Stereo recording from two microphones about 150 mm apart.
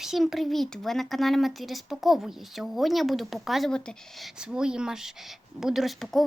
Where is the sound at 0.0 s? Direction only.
Centre (ahead or behind).